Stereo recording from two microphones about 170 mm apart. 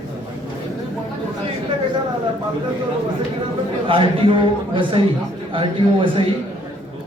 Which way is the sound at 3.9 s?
30° right (ahead or behind).